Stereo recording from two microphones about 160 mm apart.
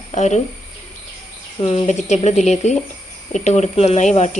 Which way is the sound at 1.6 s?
40° left (ahead or behind).